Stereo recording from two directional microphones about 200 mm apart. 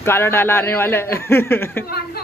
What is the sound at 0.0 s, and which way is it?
A man's voice, 10° left (ahead or behind).